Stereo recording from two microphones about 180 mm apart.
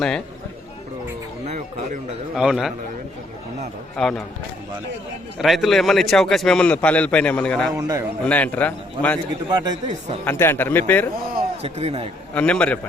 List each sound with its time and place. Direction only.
1.5 s a sound: 45° right (ahead or behind)
2.3 s a man's voice: centre (ahead or behind)
4.0 s a man's voice: centre (ahead or behind)
5.4 s a man's voice: centre (ahead or behind)
7.8 s speech: 20° right (ahead or behind)
8.2 s a man's voice: 10° left (ahead or behind)
9.5 s speech: 25° right (ahead or behind)
10.2 s a man's voice: 10° left (ahead or behind)
11.6 s a man's voice: 35° right (ahead or behind)
12.3 s a man's voice: 5° left (ahead or behind)